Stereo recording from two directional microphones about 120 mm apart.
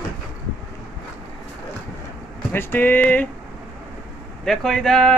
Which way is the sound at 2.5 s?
15° left (ahead or behind).